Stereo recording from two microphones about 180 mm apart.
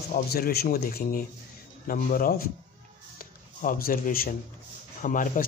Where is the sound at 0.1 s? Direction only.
60° left (ahead or behind).